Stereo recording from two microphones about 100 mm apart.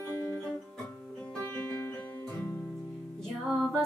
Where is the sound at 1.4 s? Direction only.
20° left (ahead or behind).